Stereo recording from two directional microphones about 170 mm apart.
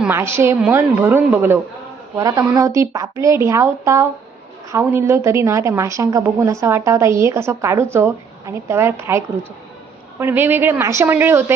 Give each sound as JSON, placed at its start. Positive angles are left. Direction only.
{"t": 0.0, "sound": "a woman's voice", "side_deg": -15}